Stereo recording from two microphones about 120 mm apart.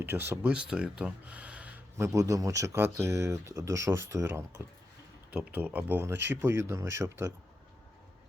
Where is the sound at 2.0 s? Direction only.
25° right (ahead or behind).